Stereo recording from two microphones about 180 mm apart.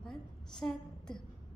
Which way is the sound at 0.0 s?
5° left (ahead or behind).